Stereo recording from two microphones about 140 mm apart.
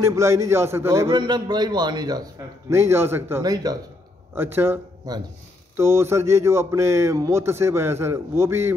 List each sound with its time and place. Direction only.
0.0 s a man's voice: 20° right (ahead or behind)
1.1 s a man's voice: 30° right (ahead or behind)
2.7 s a man's voice: 15° right (ahead or behind)
3.4 s a man's voice: 30° right (ahead or behind)
4.4 s a man's voice: 15° right (ahead or behind)
5.1 s a man's voice: 30° right (ahead or behind)